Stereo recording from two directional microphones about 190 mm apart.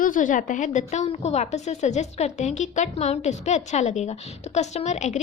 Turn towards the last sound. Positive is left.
turn(degrees=40)  # may be behind; listen again after turning